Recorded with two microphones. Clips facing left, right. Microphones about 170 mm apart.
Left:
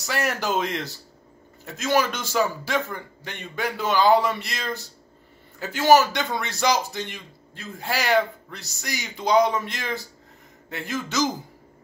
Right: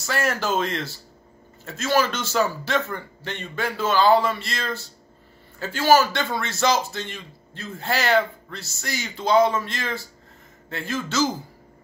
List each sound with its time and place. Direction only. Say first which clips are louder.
0.0 s a man's voice: right 1 dB; 15° left (ahead or behind)